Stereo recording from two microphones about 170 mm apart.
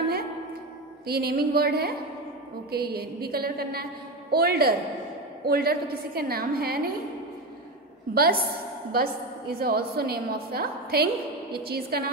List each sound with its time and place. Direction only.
1.0 s a woman's voice: 65° right (ahead or behind)
8.1 s a woman's voice: 65° right (ahead or behind)